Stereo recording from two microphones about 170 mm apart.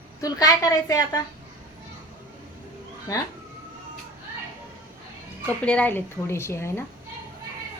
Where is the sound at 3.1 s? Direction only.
20° left (ahead or behind).